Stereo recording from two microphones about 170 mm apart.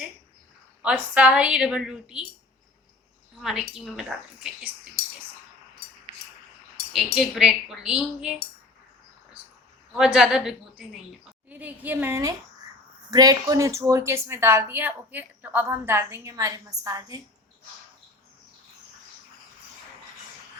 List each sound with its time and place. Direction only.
0.8 s a woman's voice: 5° right (ahead or behind)
3.4 s a woman's voice: centre (ahead or behind)
6.9 s a woman's voice: centre (ahead or behind)
10.0 s a woman's voice: 5° right (ahead or behind); by 17.2 s 20° right (ahead or behind)